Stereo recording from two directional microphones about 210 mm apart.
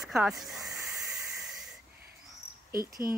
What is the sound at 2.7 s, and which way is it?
Speech, 45° right (ahead or behind).